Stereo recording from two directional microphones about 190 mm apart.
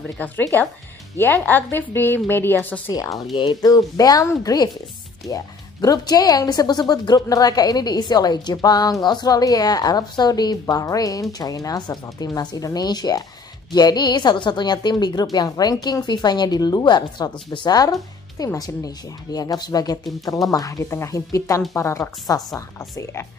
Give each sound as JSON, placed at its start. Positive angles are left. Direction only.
{"t": 0.2, "sound": "a woman's voice", "side_deg": 10}